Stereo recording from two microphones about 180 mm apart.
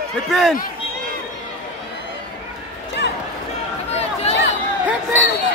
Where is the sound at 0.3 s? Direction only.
Centre (ahead or behind).